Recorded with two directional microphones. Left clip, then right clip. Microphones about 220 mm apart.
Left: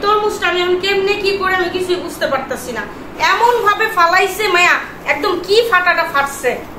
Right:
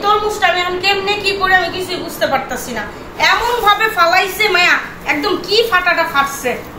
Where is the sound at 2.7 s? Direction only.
15° left (ahead or behind).